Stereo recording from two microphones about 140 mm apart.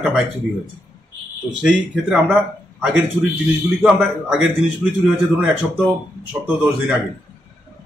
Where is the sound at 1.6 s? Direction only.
10° right (ahead or behind).